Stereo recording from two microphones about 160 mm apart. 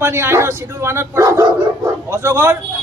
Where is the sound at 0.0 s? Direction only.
15° right (ahead or behind).